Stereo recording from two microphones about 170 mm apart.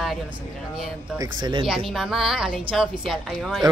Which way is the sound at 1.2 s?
25° right (ahead or behind).